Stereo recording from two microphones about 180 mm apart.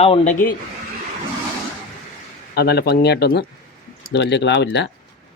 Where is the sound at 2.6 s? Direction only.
60° left (ahead or behind).